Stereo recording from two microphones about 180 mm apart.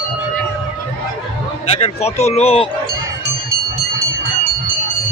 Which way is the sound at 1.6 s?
35° left (ahead or behind).